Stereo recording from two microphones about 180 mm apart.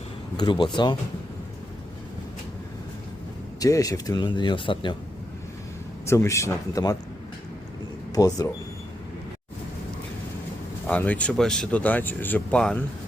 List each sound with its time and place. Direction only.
0.3 s speech: 25° left (ahead or behind)
3.6 s speech: 20° left (ahead or behind)
6.1 s speech: 15° left (ahead or behind)
8.1 s speech: 20° left (ahead or behind)
10.8 s speech: 10° left (ahead or behind)